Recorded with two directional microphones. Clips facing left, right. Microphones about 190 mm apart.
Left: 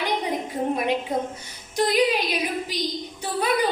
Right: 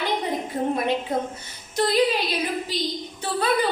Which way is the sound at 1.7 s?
15° left (ahead or behind).